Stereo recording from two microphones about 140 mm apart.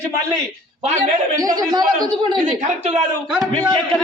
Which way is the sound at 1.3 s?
25° right (ahead or behind).